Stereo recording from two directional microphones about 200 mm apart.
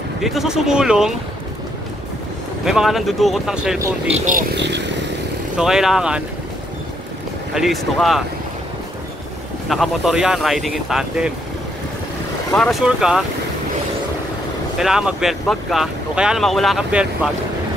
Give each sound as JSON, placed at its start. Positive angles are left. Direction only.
{"t": 0.2, "sound": "speech", "side_deg": 0}
{"t": 2.6, "sound": "speech", "side_deg": 0}
{"t": 4.6, "sound": "speech", "side_deg": -60}
{"t": 5.6, "sound": "speech", "side_deg": 0}
{"t": 7.5, "sound": "speech", "side_deg": 0}
{"t": 9.7, "sound": "speech", "side_deg": 0}
{"t": 12.5, "sound": "speech", "side_deg": 0}
{"t": 14.8, "sound": "speech", "side_deg": -5}